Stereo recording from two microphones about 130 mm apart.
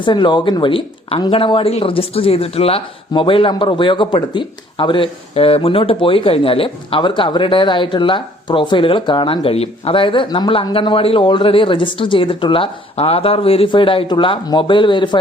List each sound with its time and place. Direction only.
0.0 s speech: 35° left (ahead or behind)